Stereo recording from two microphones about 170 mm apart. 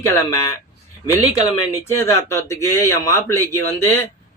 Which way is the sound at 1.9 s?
15° left (ahead or behind).